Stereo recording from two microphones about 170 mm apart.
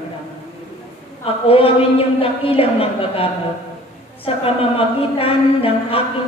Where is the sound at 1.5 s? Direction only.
35° left (ahead or behind).